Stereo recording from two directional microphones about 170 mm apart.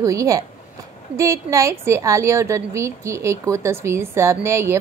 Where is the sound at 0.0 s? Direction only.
20° right (ahead or behind).